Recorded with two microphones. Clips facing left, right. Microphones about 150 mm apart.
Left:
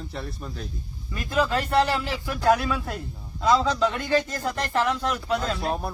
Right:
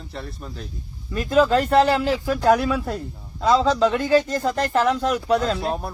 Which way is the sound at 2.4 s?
25° right (ahead or behind).